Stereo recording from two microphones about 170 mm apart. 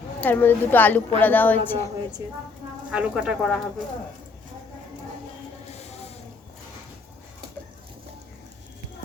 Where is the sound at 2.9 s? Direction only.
5° right (ahead or behind).